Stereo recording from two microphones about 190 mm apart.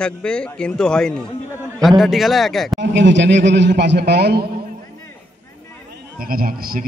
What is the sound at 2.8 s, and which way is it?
A man's voice, 70° right (ahead or behind).